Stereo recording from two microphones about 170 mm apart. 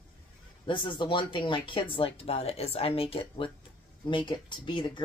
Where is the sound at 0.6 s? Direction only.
30° left (ahead or behind).